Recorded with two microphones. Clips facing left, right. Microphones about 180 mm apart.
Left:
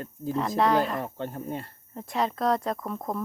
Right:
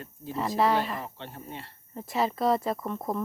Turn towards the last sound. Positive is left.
turn(degrees=0)  # may be behind; listen again after turning